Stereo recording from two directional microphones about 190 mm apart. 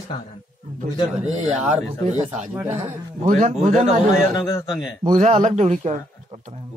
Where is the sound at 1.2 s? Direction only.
35° right (ahead or behind).